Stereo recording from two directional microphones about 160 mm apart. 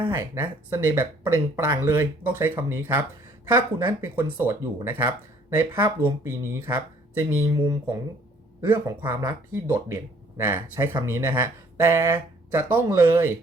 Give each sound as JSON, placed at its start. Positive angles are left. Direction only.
{"t": 0.0, "sound": "speech", "side_deg": -20}